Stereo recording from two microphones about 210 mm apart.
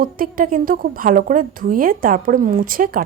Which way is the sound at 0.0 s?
40° right (ahead or behind).